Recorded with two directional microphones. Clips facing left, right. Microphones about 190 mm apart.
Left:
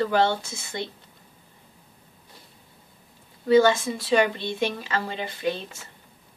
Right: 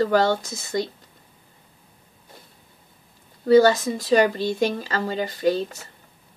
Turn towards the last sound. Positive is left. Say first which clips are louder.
# right 6 dB
turn(degrees=-40)  # may be behind; listen again after turning